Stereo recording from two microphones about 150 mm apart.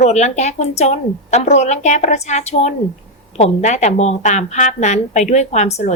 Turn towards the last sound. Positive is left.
turn(degrees=50)  # may be behind; listen again after turning